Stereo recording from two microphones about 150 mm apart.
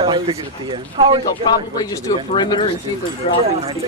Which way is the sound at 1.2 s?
25° left (ahead or behind).